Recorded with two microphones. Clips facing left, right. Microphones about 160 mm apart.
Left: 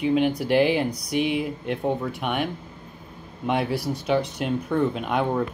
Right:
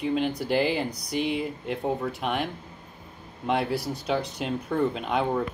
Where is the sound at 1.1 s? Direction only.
65° left (ahead or behind).